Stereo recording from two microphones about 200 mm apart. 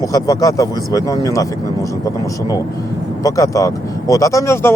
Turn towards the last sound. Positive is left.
turn(degrees=15)  # may be behind; listen again after turning